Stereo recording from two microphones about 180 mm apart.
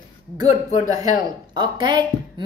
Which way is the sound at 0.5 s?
40° left (ahead or behind).